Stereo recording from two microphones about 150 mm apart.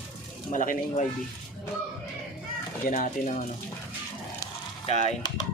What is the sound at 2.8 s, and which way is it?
Speech, 60° left (ahead or behind).